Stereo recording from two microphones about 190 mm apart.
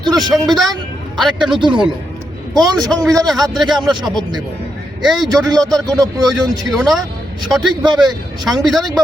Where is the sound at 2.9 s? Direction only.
Centre (ahead or behind).